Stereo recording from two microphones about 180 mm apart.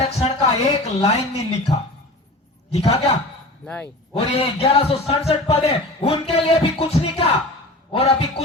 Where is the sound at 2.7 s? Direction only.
35° left (ahead or behind).